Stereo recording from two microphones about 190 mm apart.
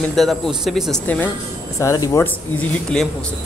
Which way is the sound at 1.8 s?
15° left (ahead or behind).